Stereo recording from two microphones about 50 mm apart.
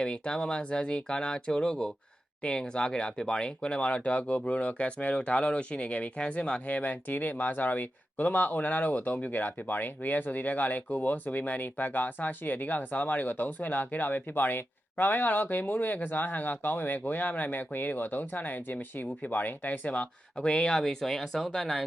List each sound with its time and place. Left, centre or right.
0.0 s speech: centre
20.7 s speech: centre